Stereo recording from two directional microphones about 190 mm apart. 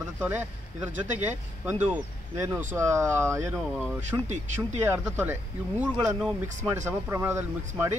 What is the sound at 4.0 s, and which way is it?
Speech, 40° right (ahead or behind).